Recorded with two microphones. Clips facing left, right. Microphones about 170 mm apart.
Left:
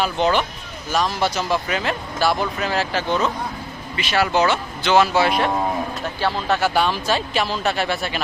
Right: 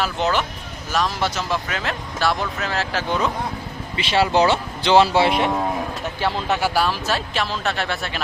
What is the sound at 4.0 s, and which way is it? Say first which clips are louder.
Speech: right 1 dB; 25° right (ahead or behind).